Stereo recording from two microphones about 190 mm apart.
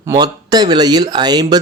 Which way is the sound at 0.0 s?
20° right (ahead or behind).